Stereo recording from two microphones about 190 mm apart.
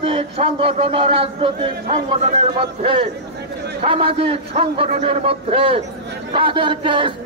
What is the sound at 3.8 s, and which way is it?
A man's voice, 30° right (ahead or behind).